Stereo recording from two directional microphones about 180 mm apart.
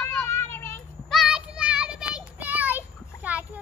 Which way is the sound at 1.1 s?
Centre (ahead or behind).